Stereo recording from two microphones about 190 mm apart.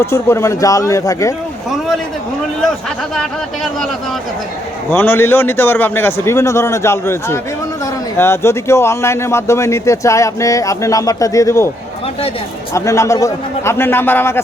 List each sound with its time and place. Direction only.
0.0 s a man's voice: 15° left (ahead or behind)
3.2 s speech: centre (ahead or behind)
4.9 s a man's voice: 10° left (ahead or behind)
12.7 s a man's voice: 15° left (ahead or behind)